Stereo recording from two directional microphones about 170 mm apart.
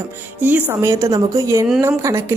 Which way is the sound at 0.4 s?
10° right (ahead or behind).